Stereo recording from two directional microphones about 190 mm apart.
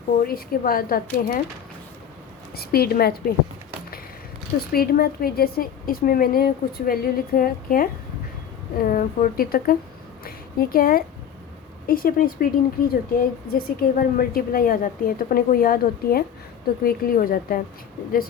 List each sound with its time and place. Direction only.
0.2 s speech: 50° left (ahead or behind)
2.6 s speech: 55° left (ahead or behind)
4.7 s speech: 50° left (ahead or behind)